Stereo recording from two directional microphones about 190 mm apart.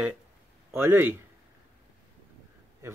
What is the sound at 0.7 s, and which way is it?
Speech, 10° right (ahead or behind).